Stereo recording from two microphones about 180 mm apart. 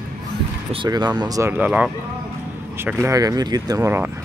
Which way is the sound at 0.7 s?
25° right (ahead or behind).